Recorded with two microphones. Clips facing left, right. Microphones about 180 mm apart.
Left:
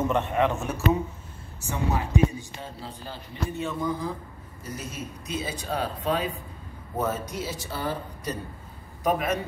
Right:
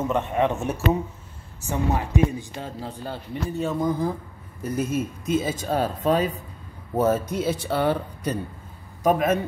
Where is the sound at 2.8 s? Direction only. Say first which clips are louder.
Right 6 dB; 45° right (ahead or behind).